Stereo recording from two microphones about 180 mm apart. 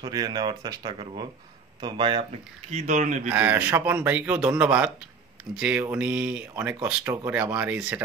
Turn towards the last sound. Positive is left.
turn(degrees=-5)  # may be behind; listen again after turning